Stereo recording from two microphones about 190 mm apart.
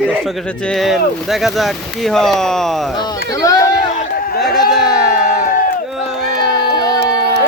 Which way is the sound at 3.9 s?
45° left (ahead or behind).